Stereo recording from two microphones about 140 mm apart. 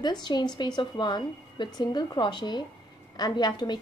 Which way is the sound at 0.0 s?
30° left (ahead or behind).